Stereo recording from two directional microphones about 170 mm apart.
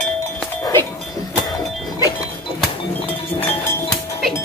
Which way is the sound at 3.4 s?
15° left (ahead or behind).